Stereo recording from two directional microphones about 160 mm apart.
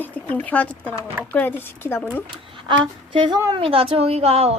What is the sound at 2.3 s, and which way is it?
A woman's voice, 30° right (ahead or behind).